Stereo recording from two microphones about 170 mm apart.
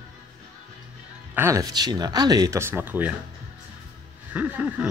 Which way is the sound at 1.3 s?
15° right (ahead or behind).